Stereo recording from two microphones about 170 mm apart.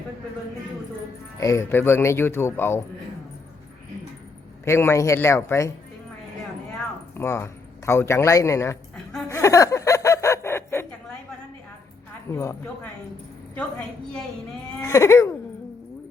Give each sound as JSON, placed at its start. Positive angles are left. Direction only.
{"t": 1.4, "sound": "speech", "side_deg": 15}
{"t": 4.6, "sound": "speech", "side_deg": 15}
{"t": 7.2, "sound": "speech", "side_deg": 15}
{"t": 9.3, "sound": "a sound", "side_deg": 20}
{"t": 12.3, "sound": "speech", "side_deg": 15}
{"t": 13.6, "sound": "a woman's voice", "side_deg": 5}
{"t": 14.8, "sound": "speech", "side_deg": 15}